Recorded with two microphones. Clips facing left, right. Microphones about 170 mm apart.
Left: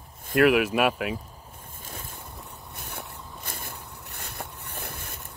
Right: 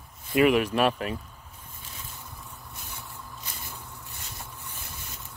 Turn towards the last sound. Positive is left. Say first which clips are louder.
# left 5 dB
turn(degrees=60)  # may be behind; listen again after turning